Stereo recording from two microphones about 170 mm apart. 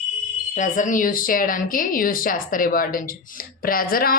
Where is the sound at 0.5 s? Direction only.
45° left (ahead or behind).